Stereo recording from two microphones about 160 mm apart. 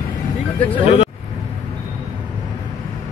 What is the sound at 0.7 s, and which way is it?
Speech, 35° left (ahead or behind).